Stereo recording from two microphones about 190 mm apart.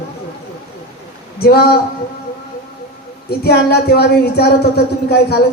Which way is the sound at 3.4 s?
55° left (ahead or behind).